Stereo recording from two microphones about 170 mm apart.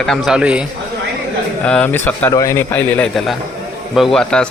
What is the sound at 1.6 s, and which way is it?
A man's voice, 10° left (ahead or behind).